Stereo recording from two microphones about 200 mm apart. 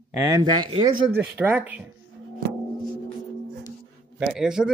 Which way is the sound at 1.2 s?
10° right (ahead or behind).